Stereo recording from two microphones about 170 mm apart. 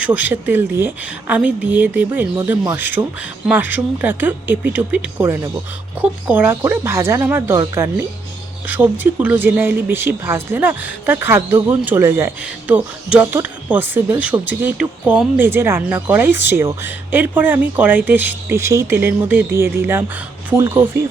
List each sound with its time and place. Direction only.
0.0 s speech: 10° right (ahead or behind)